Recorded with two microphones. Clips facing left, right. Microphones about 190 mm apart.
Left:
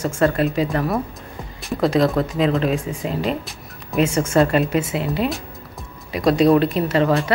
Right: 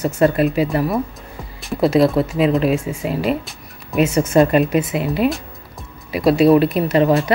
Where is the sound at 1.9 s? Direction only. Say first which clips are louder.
Right 4 dB; 10° right (ahead or behind).